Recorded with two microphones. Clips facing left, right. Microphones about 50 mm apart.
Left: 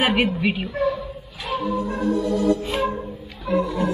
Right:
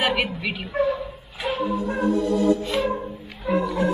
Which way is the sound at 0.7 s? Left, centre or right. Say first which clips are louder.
Even; centre.